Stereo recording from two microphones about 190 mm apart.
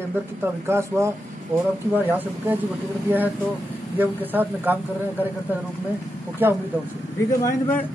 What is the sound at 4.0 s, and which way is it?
Speech, 10° right (ahead or behind).